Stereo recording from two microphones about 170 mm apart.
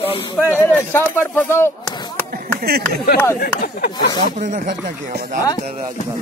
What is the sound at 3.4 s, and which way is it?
Speech, 65° left (ahead or behind).